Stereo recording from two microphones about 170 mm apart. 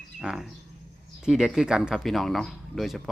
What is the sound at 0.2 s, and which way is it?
Speech, 5° right (ahead or behind).